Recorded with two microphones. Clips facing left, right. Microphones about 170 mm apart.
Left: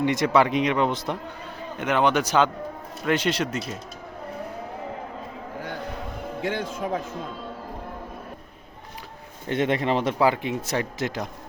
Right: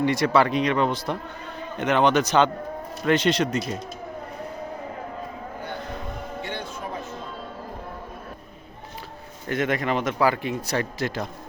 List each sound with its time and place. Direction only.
0.0 s speech: 20° left (ahead or behind)
1.8 s speech: 10° left (ahead or behind)
6.4 s a man's voice: 90° left
9.5 s speech: 25° left (ahead or behind)